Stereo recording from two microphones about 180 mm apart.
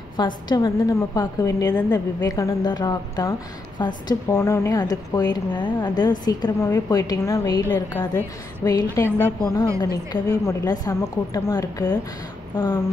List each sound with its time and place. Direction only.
0.2 s a woman's voice: 25° left (ahead or behind)
8.9 s a woman's voice: 10° left (ahead or behind)